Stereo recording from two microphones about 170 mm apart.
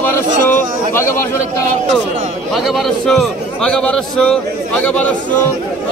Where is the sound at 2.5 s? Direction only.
Centre (ahead or behind).